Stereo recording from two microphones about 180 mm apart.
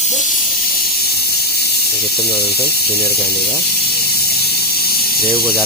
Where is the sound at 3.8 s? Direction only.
60° left (ahead or behind).